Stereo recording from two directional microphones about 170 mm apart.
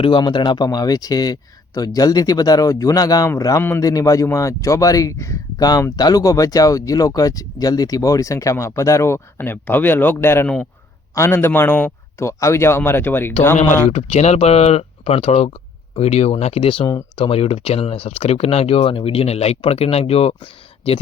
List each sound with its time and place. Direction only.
0.0 s a man's voice: 30° left (ahead or behind); by 13.3 s 10° left (ahead or behind)
13.9 s speech: 40° left (ahead or behind)